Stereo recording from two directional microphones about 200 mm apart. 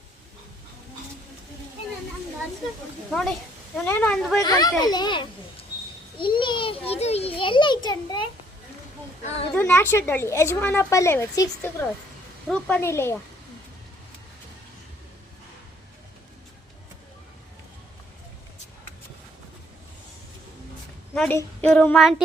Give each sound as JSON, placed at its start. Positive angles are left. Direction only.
{"t": 3.1, "sound": "speech", "side_deg": 0}
{"t": 4.4, "sound": "a child's voice", "side_deg": 20}
{"t": 9.6, "sound": "a woman's voice", "side_deg": 10}
{"t": 21.2, "sound": "a woman's voice", "side_deg": 10}